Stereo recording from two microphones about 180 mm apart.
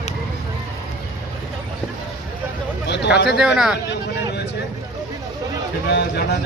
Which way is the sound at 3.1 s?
65° left (ahead or behind).